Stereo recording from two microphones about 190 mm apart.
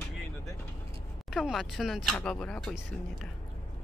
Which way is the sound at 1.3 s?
Centre (ahead or behind).